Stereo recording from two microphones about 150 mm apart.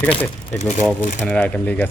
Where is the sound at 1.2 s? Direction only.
10° left (ahead or behind).